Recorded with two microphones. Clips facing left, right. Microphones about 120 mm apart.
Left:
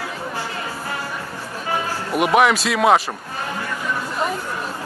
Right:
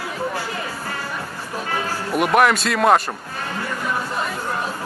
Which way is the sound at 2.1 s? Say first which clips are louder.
Left 1 dB; centre (ahead or behind).